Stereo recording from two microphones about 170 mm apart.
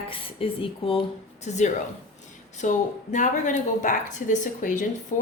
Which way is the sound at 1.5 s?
45° left (ahead or behind).